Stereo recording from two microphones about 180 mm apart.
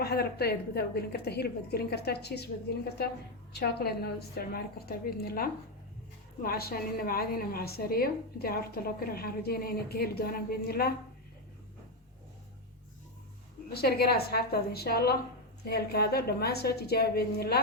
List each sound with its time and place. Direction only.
0.0 s a woman's voice: 60° left (ahead or behind)
3.5 s a woman's voice: 60° left (ahead or behind)
13.7 s a woman's voice: 60° left (ahead or behind)